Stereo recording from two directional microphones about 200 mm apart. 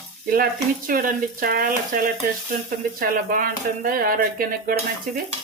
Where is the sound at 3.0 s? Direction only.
45° right (ahead or behind).